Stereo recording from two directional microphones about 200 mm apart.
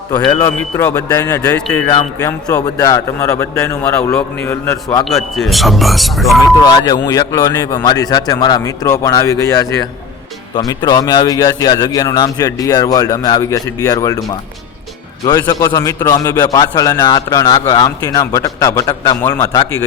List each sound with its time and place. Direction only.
0.1 s a man's voice: 15° left (ahead or behind)
1.9 s a man's voice: 20° left (ahead or behind)
5.0 s speech: centre (ahead or behind)
6.6 s a man's voice: 20° left (ahead or behind)